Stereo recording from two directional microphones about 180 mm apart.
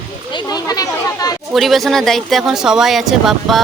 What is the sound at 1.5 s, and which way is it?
Speech, centre (ahead or behind).